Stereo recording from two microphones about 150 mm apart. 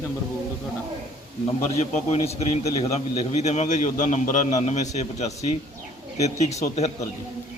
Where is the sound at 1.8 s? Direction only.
45° left (ahead or behind).